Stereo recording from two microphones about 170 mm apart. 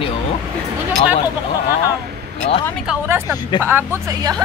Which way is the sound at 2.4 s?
35° left (ahead or behind).